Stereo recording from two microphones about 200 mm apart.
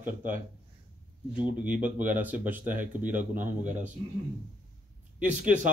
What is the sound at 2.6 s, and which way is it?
Speech, 45° right (ahead or behind).